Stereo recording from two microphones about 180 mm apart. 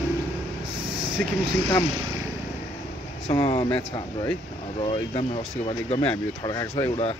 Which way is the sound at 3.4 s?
30° left (ahead or behind).